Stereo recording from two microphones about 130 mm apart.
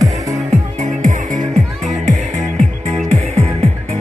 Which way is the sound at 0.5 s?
65° right (ahead or behind).